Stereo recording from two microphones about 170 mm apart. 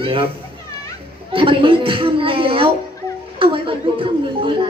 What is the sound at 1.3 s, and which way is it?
A woman's voice, 30° right (ahead or behind).